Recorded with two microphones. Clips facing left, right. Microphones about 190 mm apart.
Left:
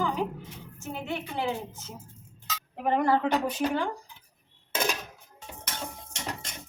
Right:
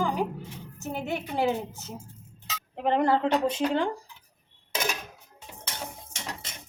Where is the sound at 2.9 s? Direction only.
25° right (ahead or behind).